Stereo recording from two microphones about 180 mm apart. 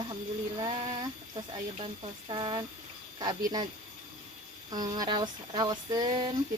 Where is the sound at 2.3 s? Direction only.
25° right (ahead or behind).